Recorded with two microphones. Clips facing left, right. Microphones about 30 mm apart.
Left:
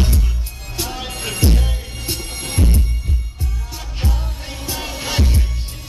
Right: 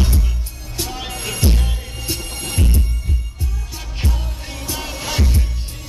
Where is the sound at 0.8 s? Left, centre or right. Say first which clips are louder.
Even; centre.